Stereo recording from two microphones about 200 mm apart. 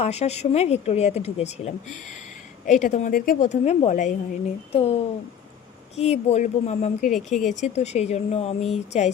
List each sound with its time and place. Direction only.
0.0 s a woman's voice: 35° left (ahead or behind)
6.0 s a woman's voice: 30° left (ahead or behind)